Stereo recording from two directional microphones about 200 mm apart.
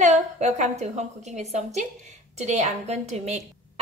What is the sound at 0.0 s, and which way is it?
A woman's voice, 35° right (ahead or behind).